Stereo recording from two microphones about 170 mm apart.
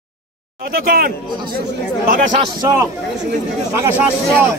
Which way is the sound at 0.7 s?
60° right (ahead or behind).